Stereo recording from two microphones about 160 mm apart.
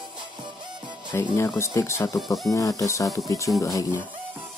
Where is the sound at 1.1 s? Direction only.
15° left (ahead or behind).